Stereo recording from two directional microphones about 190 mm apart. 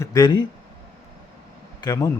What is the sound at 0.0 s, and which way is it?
Speech, 20° left (ahead or behind).